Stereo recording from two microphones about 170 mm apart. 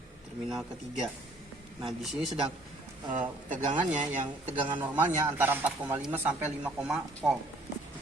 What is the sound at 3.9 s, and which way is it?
Speech, 45° right (ahead or behind).